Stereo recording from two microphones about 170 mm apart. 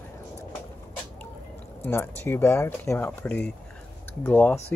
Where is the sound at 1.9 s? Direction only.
15° left (ahead or behind).